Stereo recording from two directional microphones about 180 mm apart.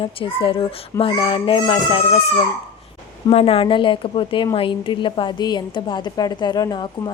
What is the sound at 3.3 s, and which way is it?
A woman's voice, 30° left (ahead or behind).